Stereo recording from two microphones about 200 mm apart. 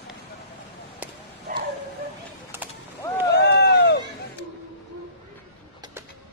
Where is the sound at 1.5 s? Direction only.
40° right (ahead or behind).